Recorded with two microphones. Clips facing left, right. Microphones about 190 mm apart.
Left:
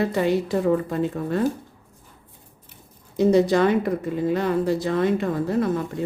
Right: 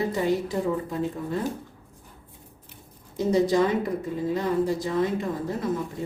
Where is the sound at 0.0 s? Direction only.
70° left (ahead or behind).